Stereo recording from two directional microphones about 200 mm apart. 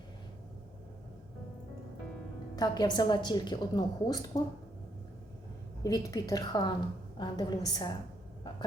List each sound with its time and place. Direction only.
2.6 s a woman's voice: 20° left (ahead or behind)
5.8 s a woman's voice: 15° left (ahead or behind)